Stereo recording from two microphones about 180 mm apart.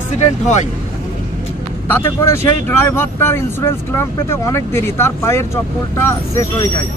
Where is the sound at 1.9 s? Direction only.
15° left (ahead or behind).